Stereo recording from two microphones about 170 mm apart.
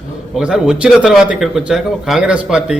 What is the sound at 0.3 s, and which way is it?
Speech, 5° right (ahead or behind).